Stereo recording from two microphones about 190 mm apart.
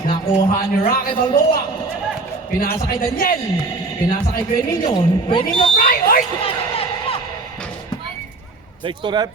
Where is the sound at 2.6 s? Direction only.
50° left (ahead or behind).